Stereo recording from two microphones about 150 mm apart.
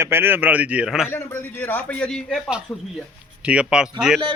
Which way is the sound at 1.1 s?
15° left (ahead or behind).